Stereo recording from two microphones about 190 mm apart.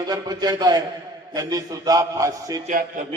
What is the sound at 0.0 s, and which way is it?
A man's voice, 20° right (ahead or behind).